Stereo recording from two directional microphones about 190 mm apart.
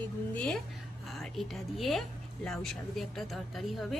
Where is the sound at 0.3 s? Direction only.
5° left (ahead or behind).